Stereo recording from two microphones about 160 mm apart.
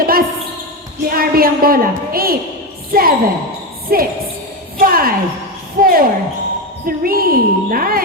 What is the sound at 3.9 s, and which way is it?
A woman's voice, 70° right (ahead or behind).